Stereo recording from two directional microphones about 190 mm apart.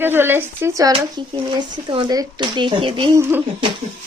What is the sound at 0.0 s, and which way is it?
Speech, 10° right (ahead or behind).